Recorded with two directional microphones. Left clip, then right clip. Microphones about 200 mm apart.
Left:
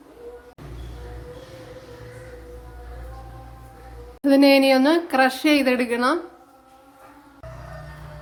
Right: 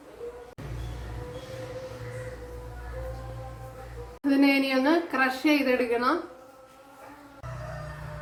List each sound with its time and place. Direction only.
4.2 s speech: 55° left (ahead or behind)